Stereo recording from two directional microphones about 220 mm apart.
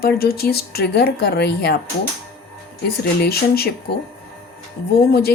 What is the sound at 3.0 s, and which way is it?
Speech, 45° left (ahead or behind).